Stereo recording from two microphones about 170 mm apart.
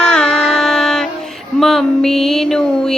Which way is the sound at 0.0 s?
5° left (ahead or behind).